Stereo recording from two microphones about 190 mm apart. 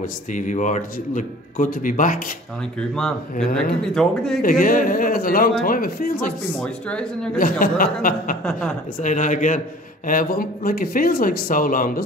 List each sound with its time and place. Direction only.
0.0 s a man's voice: 40° left (ahead or behind)
3.0 s speech: 5° left (ahead or behind)
4.4 s a man's voice: 50° left (ahead or behind)
6.6 s speech: 5° left (ahead or behind)
7.3 s a man's voice: 50° left (ahead or behind)
8.5 s speech: 5° left (ahead or behind)
9.0 s a man's voice: 40° left (ahead or behind)